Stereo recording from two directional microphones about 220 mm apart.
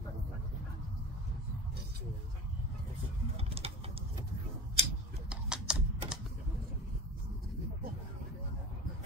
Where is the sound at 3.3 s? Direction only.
25° right (ahead or behind).